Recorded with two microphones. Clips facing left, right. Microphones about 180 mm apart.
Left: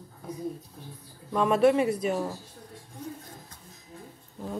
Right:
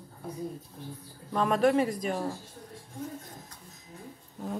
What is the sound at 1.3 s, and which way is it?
Speech, 5° left (ahead or behind).